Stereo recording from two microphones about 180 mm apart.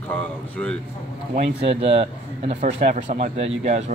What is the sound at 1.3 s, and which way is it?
Speech, 35° right (ahead or behind).